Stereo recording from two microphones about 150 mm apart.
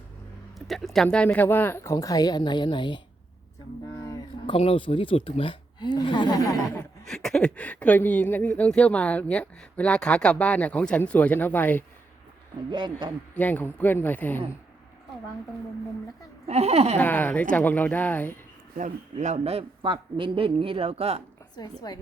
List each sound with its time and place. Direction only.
0.7 s speech: centre (ahead or behind); by 3.0 s 30° left (ahead or behind)
4.4 s speech: 40° left (ahead or behind); by 6.8 s 20° left (ahead or behind)
7.0 s speech: 5° left (ahead or behind)
12.7 s speech: 30° right (ahead or behind)
13.3 s speech: 10° left (ahead or behind)
16.5 s speech: 45° right (ahead or behind)
17.0 s speech: 10° left (ahead or behind)
19.1 s speech: 45° right (ahead or behind)
21.6 s a woman's voice: 25° left (ahead or behind)